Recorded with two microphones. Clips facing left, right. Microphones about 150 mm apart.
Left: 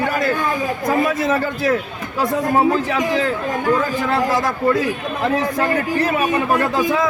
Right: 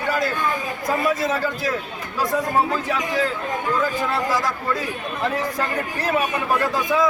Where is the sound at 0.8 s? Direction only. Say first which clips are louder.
Left 3 dB; 55° left (ahead or behind).